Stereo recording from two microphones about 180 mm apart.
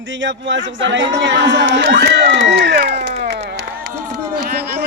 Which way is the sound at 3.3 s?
70° right (ahead or behind).